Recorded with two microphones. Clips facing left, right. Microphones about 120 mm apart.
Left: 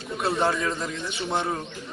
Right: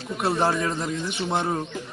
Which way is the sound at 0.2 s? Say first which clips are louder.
Right 1 dB; 10° right (ahead or behind).